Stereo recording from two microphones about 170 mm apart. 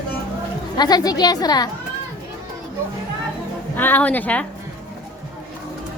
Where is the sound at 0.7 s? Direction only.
25° left (ahead or behind).